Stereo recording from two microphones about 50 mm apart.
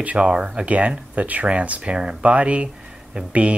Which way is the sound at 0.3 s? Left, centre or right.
Centre.